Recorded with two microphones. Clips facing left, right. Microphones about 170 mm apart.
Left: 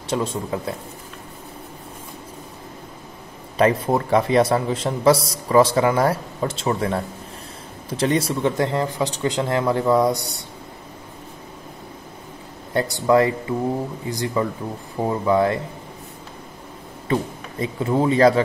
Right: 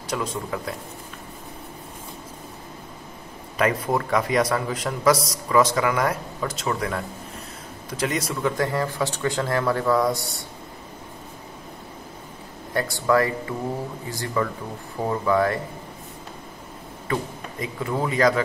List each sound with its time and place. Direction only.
0.1 s a man's voice: 25° left (ahead or behind)
3.5 s a man's voice: 30° left (ahead or behind)
12.7 s a man's voice: 20° left (ahead or behind)
17.1 s a man's voice: 30° left (ahead or behind)